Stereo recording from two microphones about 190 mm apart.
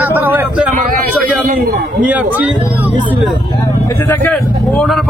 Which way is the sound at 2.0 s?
10° right (ahead or behind).